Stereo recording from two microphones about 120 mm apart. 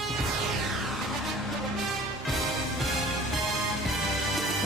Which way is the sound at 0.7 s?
Centre (ahead or behind).